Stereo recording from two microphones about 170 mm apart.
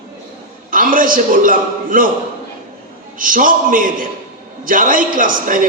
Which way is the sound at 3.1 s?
55° right (ahead or behind).